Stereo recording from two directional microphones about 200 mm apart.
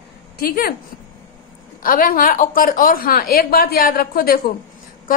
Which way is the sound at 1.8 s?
45° left (ahead or behind).